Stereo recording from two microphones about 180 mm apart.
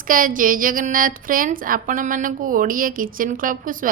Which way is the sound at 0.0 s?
50° right (ahead or behind).